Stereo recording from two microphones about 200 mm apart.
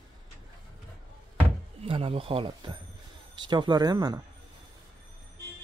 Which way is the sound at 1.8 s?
30° right (ahead or behind).